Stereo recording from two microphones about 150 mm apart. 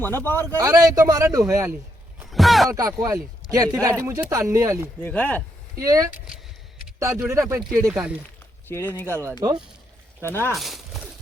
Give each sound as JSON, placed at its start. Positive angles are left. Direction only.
{"t": 0.0, "sound": "speech", "side_deg": 15}
{"t": 0.5, "sound": "speech", "side_deg": -20}
{"t": 2.3, "sound": "a sound", "side_deg": 0}
{"t": 2.6, "sound": "speech", "side_deg": -25}
{"t": 3.9, "sound": "speech", "side_deg": -15}
{"t": 5.0, "sound": "speech", "side_deg": 10}
{"t": 5.8, "sound": "speech", "side_deg": -20}
{"t": 7.3, "sound": "speech", "side_deg": -20}
{"t": 7.9, "sound": "speech", "side_deg": -5}
{"t": 8.6, "sound": "speech", "side_deg": 15}
{"t": 10.2, "sound": "speech", "side_deg": 15}
{"t": 10.5, "sound": "a sound", "side_deg": 0}